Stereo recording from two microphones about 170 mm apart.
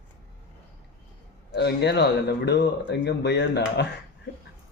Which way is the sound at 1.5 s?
85° left.